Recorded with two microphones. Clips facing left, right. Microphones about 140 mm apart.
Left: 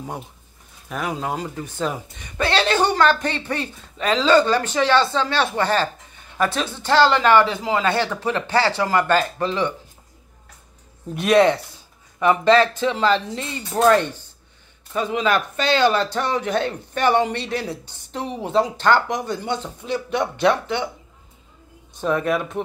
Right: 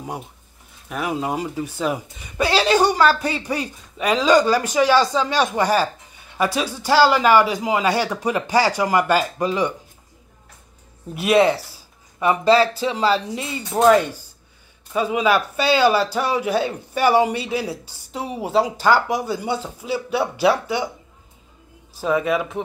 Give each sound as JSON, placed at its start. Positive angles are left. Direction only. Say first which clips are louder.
{"t": 0.8, "sound": "speech", "louder": "right 2 dB", "side_deg": -5}
{"t": 11.1, "sound": "speech", "louder": "left 1 dB", "side_deg": -5}
{"t": 12.5, "sound": "speech", "louder": "even", "side_deg": -35}
{"t": 12.8, "sound": "speech", "louder": "even", "side_deg": -10}
{"t": 22.0, "sound": "speech", "louder": "right 1 dB", "side_deg": 0}